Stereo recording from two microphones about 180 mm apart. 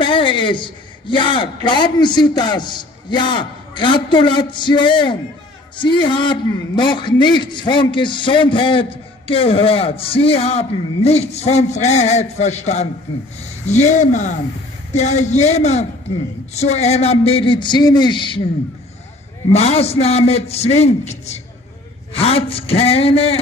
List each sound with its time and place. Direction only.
0.0 s a man's voice: 30° left (ahead or behind)
19.5 s a man's voice: 35° left (ahead or behind)